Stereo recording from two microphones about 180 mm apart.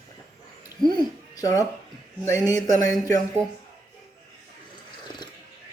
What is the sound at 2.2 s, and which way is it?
Speech, 15° left (ahead or behind).